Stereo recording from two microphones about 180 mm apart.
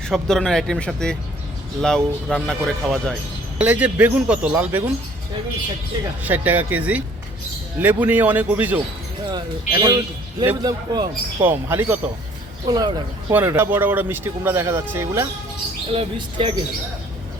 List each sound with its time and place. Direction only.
0.1 s speech: centre (ahead or behind)
6.2 s speech: 10° right (ahead or behind)
9.3 s a man's voice: 25° right (ahead or behind)
11.4 s speech: 10° right (ahead or behind)
12.6 s a man's voice: 25° right (ahead or behind)
13.3 s speech: 10° right (ahead or behind)
15.9 s a man's voice: 30° right (ahead or behind)